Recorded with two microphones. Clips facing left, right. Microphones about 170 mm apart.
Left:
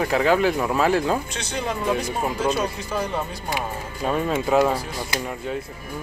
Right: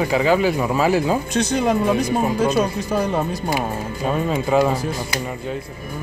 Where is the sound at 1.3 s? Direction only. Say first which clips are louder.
Right 9 dB; 40° right (ahead or behind).